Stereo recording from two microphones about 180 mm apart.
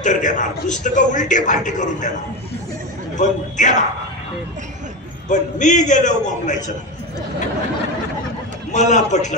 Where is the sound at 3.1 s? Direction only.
40° left (ahead or behind).